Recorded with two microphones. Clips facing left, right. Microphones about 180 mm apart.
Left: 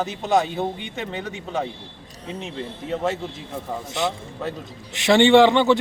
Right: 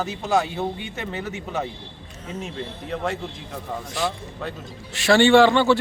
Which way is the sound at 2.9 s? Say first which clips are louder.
Left 3 dB; 25° left (ahead or behind).